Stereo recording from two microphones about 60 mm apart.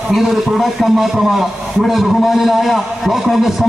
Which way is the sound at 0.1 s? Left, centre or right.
Centre.